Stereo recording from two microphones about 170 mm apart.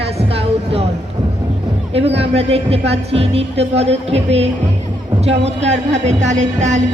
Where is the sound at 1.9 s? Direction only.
35° right (ahead or behind).